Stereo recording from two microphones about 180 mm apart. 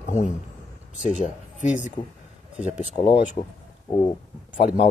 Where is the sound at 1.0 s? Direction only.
40° left (ahead or behind).